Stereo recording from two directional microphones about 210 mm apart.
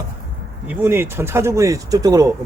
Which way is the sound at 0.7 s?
10° right (ahead or behind).